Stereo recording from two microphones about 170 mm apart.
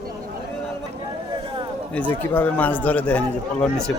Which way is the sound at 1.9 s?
10° left (ahead or behind).